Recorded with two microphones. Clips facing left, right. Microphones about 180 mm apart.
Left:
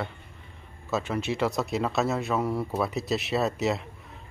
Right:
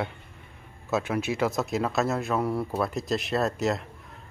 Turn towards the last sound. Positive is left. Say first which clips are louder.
# even
turn(degrees=0)  # may be behind; listen again after turning